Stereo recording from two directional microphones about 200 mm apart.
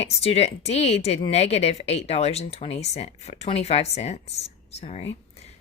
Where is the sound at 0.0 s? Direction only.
30° left (ahead or behind).